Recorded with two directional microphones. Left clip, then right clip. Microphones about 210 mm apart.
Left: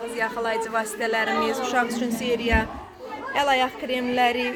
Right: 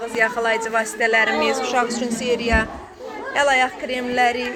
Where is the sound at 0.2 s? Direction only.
Centre (ahead or behind).